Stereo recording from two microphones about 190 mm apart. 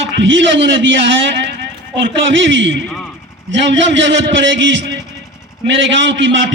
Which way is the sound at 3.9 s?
75° right (ahead or behind).